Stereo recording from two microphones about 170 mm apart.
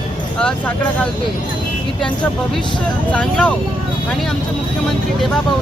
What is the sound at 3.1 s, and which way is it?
Speech, 10° left (ahead or behind).